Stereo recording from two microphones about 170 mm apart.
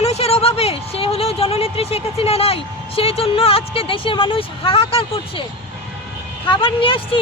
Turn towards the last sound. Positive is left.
turn(degrees=30)  # may be behind; listen again after turning